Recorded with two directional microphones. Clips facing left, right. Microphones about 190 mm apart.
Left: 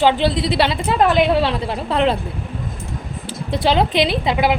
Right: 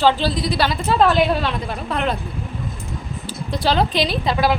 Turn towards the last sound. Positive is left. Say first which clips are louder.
# left 1 dB
turn(degrees=20)  # may be behind; listen again after turning